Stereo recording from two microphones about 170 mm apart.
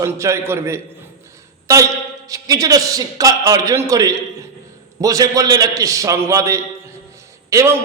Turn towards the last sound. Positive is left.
turn(degrees=-15)  # may be behind; listen again after turning